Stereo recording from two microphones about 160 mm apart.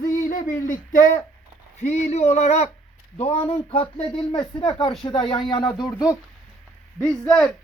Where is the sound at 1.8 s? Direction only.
45° left (ahead or behind); by 6.1 s 20° left (ahead or behind).